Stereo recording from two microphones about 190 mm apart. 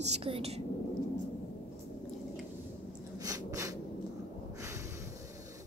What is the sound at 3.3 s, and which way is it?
Snort, 20° right (ahead or behind).